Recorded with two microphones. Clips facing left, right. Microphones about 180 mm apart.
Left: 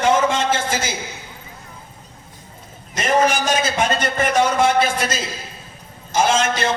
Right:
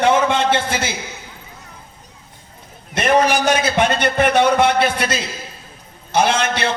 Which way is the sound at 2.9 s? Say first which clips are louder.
Right 2 dB; 60° right (ahead or behind).